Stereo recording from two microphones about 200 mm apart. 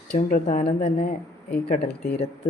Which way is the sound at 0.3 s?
40° left (ahead or behind).